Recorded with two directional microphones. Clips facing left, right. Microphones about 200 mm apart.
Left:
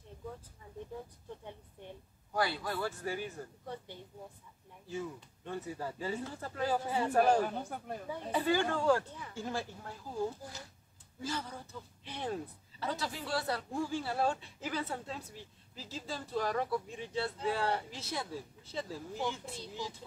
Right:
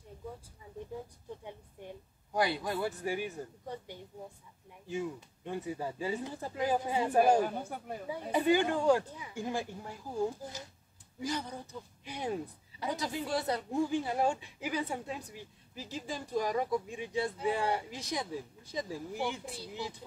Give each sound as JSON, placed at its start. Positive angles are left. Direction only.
{"t": 2.3, "sound": "a woman's voice", "side_deg": -20}